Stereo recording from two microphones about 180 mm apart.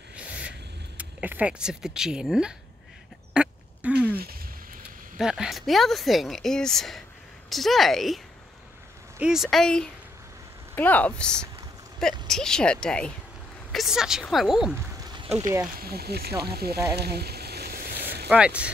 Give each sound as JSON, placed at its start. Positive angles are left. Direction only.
{"t": 0.1, "sound": "a sound", "side_deg": -5}
{"t": 3.3, "sound": "quack", "side_deg": -10}
{"t": 5.1, "sound": "speech", "side_deg": -5}
{"t": 9.2, "sound": "speech", "side_deg": 0}
{"t": 15.7, "sound": "speech", "side_deg": -60}
{"t": 16.4, "sound": "a sound", "side_deg": -60}
{"t": 18.3, "sound": "speech", "side_deg": -5}